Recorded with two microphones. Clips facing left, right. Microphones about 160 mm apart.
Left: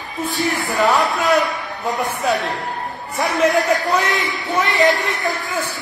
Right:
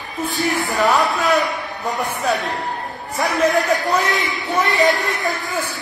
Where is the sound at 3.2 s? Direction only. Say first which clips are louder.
Left 1 dB; centre (ahead or behind).